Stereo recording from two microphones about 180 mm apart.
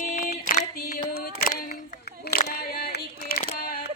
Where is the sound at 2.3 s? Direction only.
55° left (ahead or behind).